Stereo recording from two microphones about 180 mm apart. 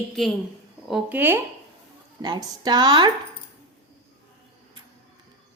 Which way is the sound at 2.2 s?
25° right (ahead or behind).